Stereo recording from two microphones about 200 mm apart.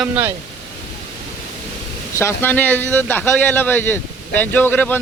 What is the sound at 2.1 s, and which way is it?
Speech, 10° left (ahead or behind).